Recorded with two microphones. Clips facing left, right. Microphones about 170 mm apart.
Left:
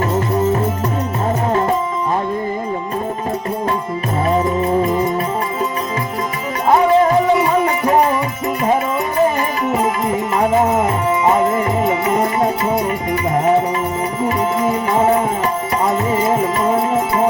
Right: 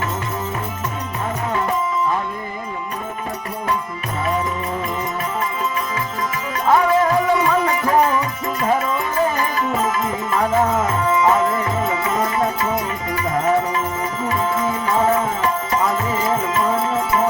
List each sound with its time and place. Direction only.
4.3 s music: 35° left (ahead or behind)
6.7 s music: 25° left (ahead or behind)
15.8 s tabla: 25° left (ahead or behind)